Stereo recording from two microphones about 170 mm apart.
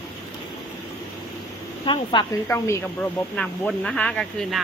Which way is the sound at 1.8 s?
30° left (ahead or behind).